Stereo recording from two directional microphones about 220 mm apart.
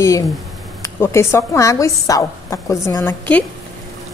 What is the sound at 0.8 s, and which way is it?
Speech, 10° left (ahead or behind).